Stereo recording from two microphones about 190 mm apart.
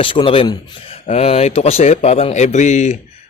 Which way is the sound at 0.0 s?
25° left (ahead or behind).